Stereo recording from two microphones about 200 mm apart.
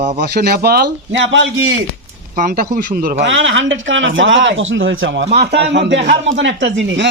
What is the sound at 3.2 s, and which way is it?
A man's voice, 70° right (ahead or behind).